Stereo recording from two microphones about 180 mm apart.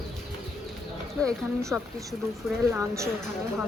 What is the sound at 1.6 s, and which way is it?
A woman's voice, 15° right (ahead or behind).